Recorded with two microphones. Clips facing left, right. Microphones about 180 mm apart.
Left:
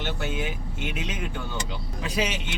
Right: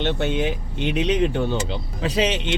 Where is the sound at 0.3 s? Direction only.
35° right (ahead or behind).